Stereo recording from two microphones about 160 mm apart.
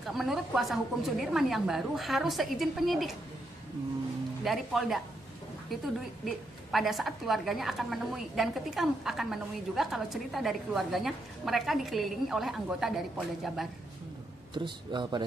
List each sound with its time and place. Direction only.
0.0 s a woman's voice: centre (ahead or behind)
4.5 s a woman's voice: centre (ahead or behind)
6.2 s a woman's voice: centre (ahead or behind)
14.5 s speech: 30° right (ahead or behind)